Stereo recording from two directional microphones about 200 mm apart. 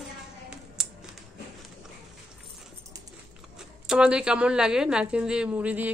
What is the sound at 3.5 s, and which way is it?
A woman's voice, 5° right (ahead or behind).